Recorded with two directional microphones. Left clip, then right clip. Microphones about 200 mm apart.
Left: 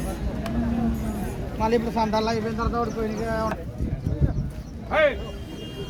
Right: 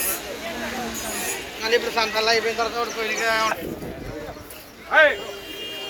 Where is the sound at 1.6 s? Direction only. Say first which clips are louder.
Right 2 dB; 60° left (ahead or behind).